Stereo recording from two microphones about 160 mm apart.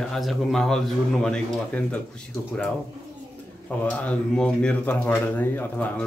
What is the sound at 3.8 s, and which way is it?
Speech, 10° left (ahead or behind).